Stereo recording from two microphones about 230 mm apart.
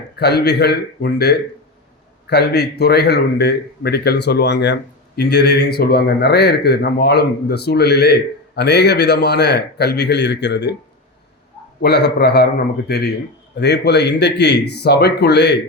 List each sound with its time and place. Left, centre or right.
0.2 s speech: left
11.8 s speech: left